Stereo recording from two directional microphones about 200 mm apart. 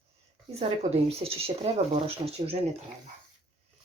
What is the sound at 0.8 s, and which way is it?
Speech, 30° right (ahead or behind).